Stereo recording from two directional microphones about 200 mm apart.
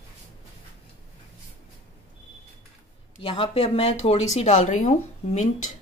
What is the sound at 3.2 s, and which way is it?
Speech, 25° left (ahead or behind).